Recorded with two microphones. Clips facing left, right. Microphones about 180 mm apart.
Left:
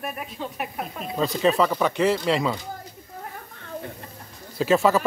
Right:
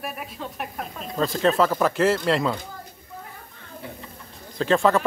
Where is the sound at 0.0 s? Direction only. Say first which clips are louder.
Left 1 dB; centre (ahead or behind).